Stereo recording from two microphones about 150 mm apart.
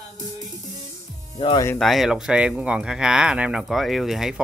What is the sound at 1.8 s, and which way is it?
Speech, centre (ahead or behind).